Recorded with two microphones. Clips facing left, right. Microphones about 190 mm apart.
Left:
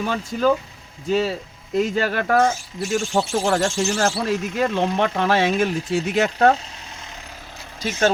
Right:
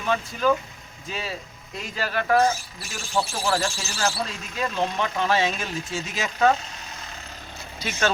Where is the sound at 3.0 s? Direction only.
25° left (ahead or behind).